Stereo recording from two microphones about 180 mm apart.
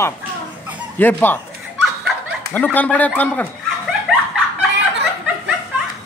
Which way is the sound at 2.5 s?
10° left (ahead or behind).